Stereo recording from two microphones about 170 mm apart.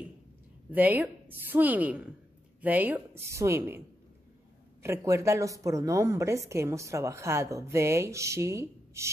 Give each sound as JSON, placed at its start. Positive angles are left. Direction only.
{"t": 0.7, "sound": "a woman's voice", "side_deg": -10}
{"t": 4.8, "sound": "a woman's voice", "side_deg": -15}